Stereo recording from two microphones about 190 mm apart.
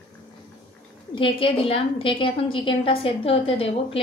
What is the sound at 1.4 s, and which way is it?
A woman's voice, 30° left (ahead or behind).